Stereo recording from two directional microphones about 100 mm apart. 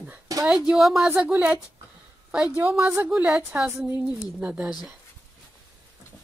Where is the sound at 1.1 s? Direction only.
15° right (ahead or behind).